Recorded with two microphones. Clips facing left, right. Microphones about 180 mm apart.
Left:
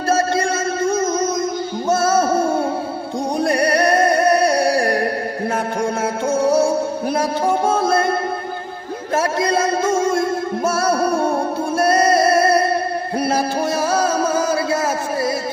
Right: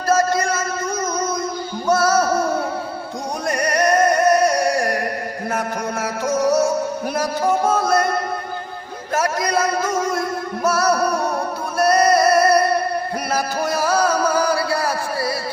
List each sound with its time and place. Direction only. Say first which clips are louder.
0.1 s music: even; 30° left (ahead or behind)
9.1 s music: left 2 dB; 25° left (ahead or behind)